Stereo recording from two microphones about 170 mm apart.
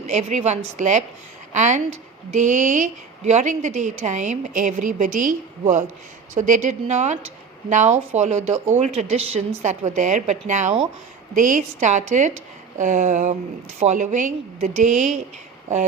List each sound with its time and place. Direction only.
0.1 s a woman's voice: 45° right (ahead or behind)